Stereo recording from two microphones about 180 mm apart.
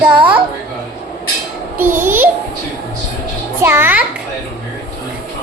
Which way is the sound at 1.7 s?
10° right (ahead or behind).